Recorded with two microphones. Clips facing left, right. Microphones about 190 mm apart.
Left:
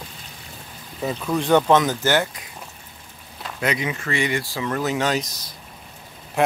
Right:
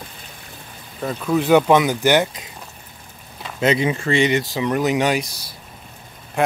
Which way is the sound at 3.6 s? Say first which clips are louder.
Right 6 dB; 30° right (ahead or behind).